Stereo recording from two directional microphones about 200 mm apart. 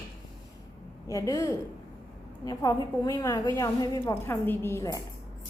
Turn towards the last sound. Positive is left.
turn(degrees=15)  # may be behind; listen again after turning